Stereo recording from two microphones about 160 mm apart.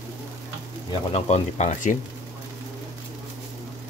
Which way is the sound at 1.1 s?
40° left (ahead or behind).